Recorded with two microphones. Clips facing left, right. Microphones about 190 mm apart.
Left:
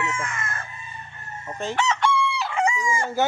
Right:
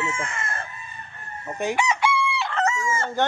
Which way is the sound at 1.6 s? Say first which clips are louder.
Right 1 dB; 10° right (ahead or behind).